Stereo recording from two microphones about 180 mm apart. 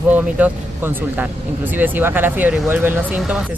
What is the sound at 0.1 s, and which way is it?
Speech, 10° right (ahead or behind).